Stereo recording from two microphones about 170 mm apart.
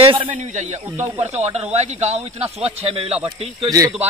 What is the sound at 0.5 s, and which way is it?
Speech, 45° right (ahead or behind).